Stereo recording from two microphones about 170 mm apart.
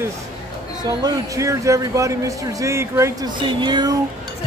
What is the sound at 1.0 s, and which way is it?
A man's voice, 20° right (ahead or behind).